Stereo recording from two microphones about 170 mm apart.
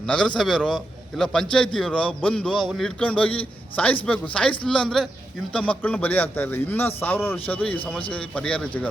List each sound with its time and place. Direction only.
0.0 s a man's voice: 5° left (ahead or behind)